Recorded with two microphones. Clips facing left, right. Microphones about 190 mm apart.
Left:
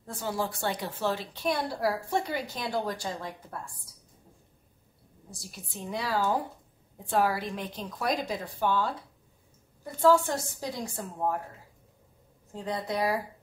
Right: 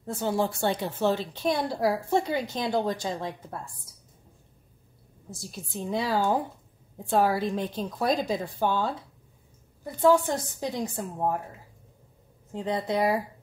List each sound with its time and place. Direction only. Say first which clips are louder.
0.0 s a woman's voice: right 5 dB; 25° right (ahead or behind)
5.3 s a woman's voice: right 6 dB; 25° right (ahead or behind)
10.0 s a woman's voice: right 2 dB; 20° right (ahead or behind)
12.5 s a woman's voice: right 4 dB; 20° right (ahead or behind)